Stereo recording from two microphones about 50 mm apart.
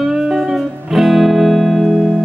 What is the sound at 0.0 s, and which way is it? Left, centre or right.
Music, centre.